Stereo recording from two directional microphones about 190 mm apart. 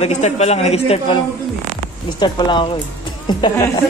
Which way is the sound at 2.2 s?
25° left (ahead or behind).